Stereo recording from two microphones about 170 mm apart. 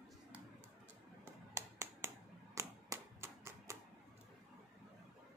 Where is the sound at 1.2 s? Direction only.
15° right (ahead or behind).